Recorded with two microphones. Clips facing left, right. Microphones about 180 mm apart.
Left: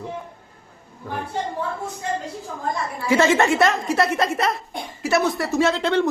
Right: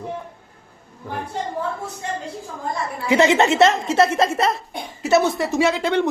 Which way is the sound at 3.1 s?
20° right (ahead or behind).